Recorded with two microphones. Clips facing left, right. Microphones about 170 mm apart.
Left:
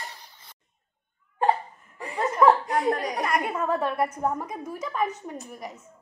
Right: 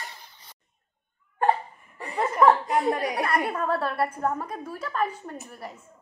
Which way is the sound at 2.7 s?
5° right (ahead or behind).